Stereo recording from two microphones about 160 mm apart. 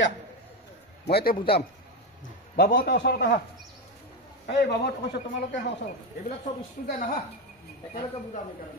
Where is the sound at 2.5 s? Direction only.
65° left (ahead or behind); by 3.3 s 80° left.